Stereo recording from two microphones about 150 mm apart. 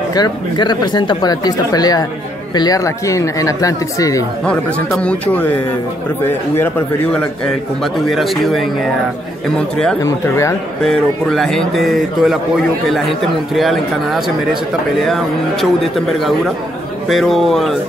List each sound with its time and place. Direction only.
0.1 s speech: 30° left (ahead or behind)
4.5 s a man's voice: 5° left (ahead or behind)
10.0 s speech: 20° left (ahead or behind)
10.8 s a man's voice: 5° left (ahead or behind)
17.1 s a man's voice: centre (ahead or behind)